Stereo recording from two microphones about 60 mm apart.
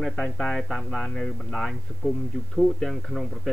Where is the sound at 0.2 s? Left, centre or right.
Centre.